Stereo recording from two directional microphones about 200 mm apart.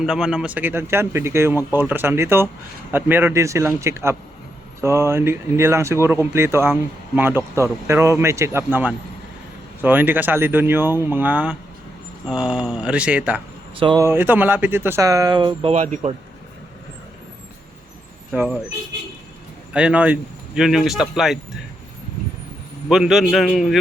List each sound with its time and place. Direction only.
0.0 s speech: 5° right (ahead or behind)
13.7 s speech: 25° right (ahead or behind)
14.0 s speech: 10° right (ahead or behind); by 16.1 s 30° right (ahead or behind)
19.7 s speech: 5° right (ahead or behind)
22.9 s speech: 5° right (ahead or behind)